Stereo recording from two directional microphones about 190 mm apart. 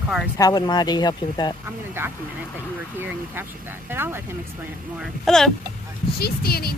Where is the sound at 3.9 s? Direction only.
10° right (ahead or behind).